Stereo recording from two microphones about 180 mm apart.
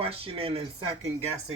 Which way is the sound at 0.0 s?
30° right (ahead or behind).